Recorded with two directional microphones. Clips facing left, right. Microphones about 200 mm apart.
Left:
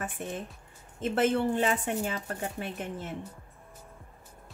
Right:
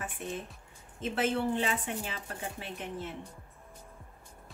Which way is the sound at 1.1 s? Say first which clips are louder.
Left 4 dB; 50° left (ahead or behind).